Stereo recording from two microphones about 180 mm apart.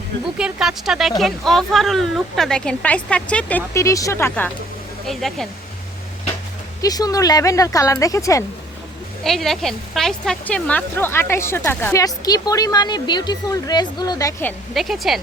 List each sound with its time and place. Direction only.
0.3 s a woman's voice: 5° right (ahead or behind); by 4.5 s 10° left (ahead or behind)
5.0 s a woman's voice: centre (ahead or behind)
6.8 s speech: 20° left (ahead or behind)
9.2 s speech: centre (ahead or behind)
14.7 s a woman's voice: centre (ahead or behind)